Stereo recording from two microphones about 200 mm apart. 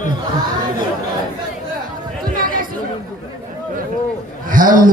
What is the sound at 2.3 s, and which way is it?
Chatter, 45° right (ahead or behind).